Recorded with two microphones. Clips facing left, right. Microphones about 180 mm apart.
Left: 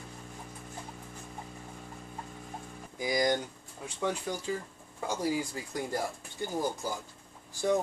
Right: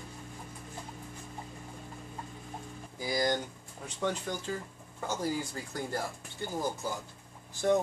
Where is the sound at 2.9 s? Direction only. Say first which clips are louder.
Left 2 dB; 15° left (ahead or behind).